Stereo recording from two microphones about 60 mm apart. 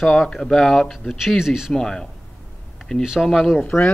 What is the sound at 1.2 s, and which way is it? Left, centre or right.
Speech, centre.